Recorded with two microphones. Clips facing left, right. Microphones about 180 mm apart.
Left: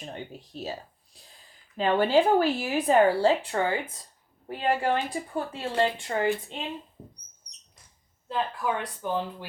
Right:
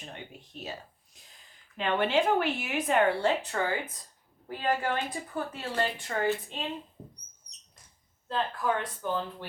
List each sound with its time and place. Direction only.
0.0 s speech: 35° left (ahead or behind)
1.7 s a woman's voice: 35° left (ahead or behind)
8.3 s speech: 15° left (ahead or behind)